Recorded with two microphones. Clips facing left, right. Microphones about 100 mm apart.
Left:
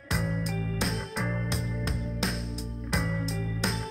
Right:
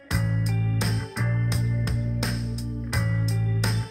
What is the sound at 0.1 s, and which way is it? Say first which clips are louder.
Music: right 2 dB; centre (ahead or behind).